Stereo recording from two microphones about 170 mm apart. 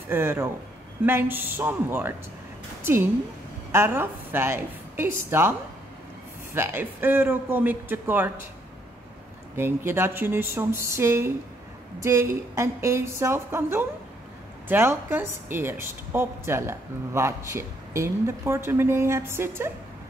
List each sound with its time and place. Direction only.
0.1 s a woman's voice: 15° right (ahead or behind)
6.5 s a woman's voice: 15° right (ahead or behind)
9.6 s a woman's voice: 15° right (ahead or behind)